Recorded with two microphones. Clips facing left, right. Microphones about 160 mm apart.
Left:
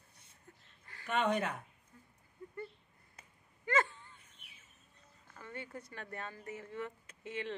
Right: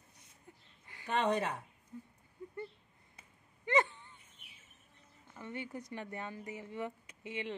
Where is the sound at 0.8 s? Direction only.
15° right (ahead or behind).